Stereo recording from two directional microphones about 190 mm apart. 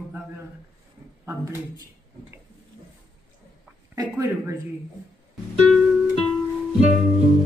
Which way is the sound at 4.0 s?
15° right (ahead or behind).